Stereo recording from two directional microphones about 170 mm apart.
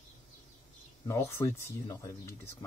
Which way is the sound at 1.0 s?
15° left (ahead or behind).